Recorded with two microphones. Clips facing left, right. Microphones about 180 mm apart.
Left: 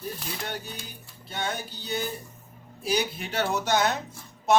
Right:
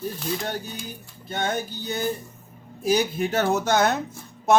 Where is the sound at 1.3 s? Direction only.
45° right (ahead or behind).